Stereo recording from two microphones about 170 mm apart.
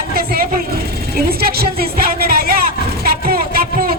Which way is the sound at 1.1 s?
65° right (ahead or behind).